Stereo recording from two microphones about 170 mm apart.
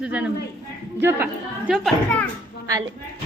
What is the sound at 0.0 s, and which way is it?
A woman's voice, 10° right (ahead or behind).